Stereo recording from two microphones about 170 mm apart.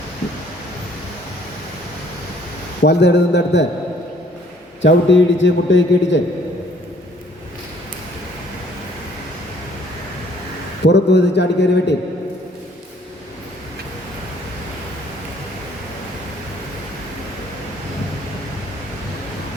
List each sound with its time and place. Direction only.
2.8 s a man's voice: 85° left
4.8 s a man's voice: 90° left
10.8 s a man's voice: 90° left